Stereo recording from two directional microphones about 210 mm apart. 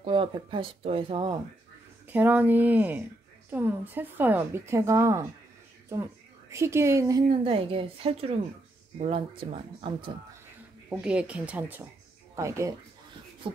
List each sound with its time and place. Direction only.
0.0 s speech: 25° right (ahead or behind)
2.0 s a woman's voice: 10° right (ahead or behind)
6.5 s a woman's voice: 15° right (ahead or behind)
7.4 s speech: 25° right (ahead or behind)
10.9 s a woman's voice: 5° right (ahead or behind)